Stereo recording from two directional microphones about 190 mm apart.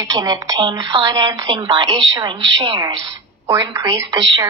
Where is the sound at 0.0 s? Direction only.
20° right (ahead or behind).